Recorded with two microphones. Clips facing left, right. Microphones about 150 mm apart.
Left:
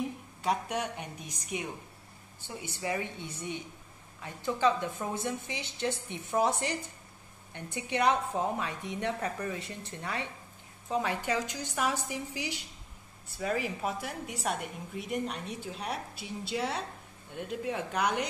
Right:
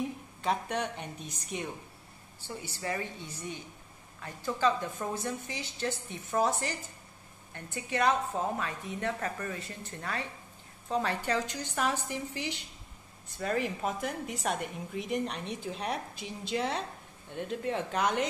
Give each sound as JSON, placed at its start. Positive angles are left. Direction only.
{"t": 0.4, "sound": "a woman's voice", "side_deg": 10}
{"t": 4.2, "sound": "a woman's voice", "side_deg": 15}